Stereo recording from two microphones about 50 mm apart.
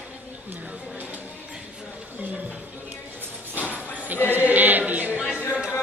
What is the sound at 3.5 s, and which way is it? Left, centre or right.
Music, right.